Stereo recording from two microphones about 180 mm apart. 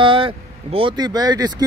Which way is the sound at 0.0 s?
30° right (ahead or behind).